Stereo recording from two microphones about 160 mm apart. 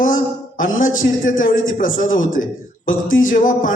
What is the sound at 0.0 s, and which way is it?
A man's voice, 55° left (ahead or behind).